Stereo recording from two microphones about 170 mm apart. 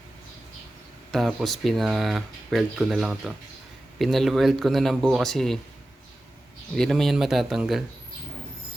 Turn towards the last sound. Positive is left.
turn(degrees=0)  # may be behind; listen again after turning